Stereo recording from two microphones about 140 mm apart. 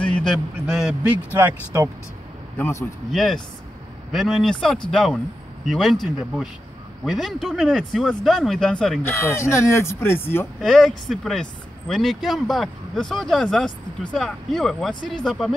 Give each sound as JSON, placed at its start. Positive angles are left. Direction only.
{"t": 0.0, "sound": "a man's voice", "side_deg": 0}
{"t": 2.5, "sound": "speech", "side_deg": 20}
{"t": 3.1, "sound": "speech", "side_deg": 0}
{"t": 9.0, "sound": "speech", "side_deg": 20}
{"t": 10.6, "sound": "speech", "side_deg": 0}